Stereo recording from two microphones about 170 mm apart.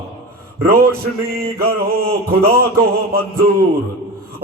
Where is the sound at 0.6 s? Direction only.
60° right (ahead or behind).